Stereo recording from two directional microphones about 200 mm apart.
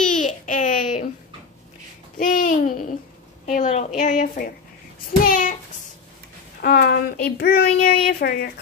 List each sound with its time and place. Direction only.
0.1 s babbling: 40° left (ahead or behind)
2.1 s babbling: 40° left (ahead or behind)
3.4 s a woman's voice: 35° left (ahead or behind)
5.3 s child singing: 40° left (ahead or behind)
6.6 s a child's voice: 50° left (ahead or behind)